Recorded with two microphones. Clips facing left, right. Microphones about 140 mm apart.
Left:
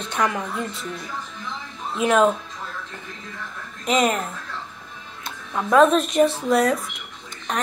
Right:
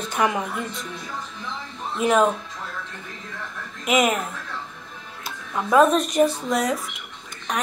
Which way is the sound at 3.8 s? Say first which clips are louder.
Even; 5° right (ahead or behind).